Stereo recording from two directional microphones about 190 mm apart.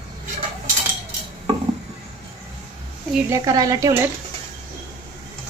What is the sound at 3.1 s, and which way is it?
Speech, 15° right (ahead or behind).